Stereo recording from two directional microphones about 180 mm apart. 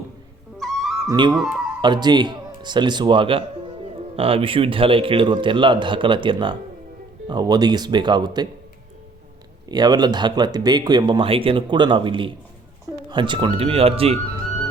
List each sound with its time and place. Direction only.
0.6 s music: centre (ahead or behind)
1.0 s speech: 20° right (ahead or behind)
1.4 s speech: centre (ahead or behind)
1.8 s speech: 25° right (ahead or behind)
9.6 s speech: 20° right (ahead or behind)